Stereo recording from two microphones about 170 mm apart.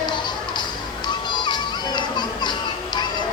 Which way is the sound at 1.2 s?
25° left (ahead or behind).